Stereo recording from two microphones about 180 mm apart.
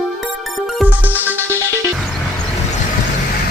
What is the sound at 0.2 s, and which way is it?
Music, centre (ahead or behind).